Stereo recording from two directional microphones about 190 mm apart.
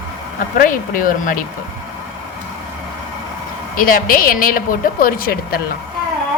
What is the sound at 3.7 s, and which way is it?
A woman's voice, 50° left (ahead or behind).